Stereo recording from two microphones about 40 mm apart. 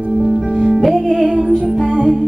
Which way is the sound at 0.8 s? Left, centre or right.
Centre.